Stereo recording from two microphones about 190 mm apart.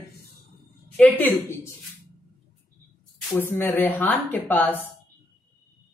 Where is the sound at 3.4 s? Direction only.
10° left (ahead or behind).